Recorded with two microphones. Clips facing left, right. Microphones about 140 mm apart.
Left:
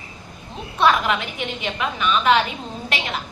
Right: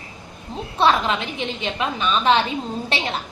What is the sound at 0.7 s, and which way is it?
A woman's voice, 30° right (ahead or behind).